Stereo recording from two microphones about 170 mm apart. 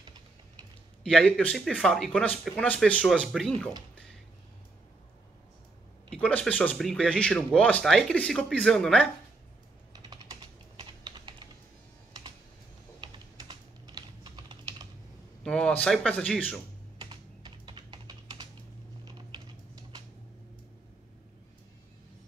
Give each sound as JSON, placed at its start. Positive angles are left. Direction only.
{"t": 1.0, "sound": "speech", "side_deg": 5}
{"t": 6.1, "sound": "speech", "side_deg": 5}
{"t": 10.0, "sound": "typing", "side_deg": -30}
{"t": 13.0, "sound": "typing", "side_deg": -25}
{"t": 15.4, "sound": "speech", "side_deg": 5}
{"t": 17.0, "sound": "typing", "side_deg": -25}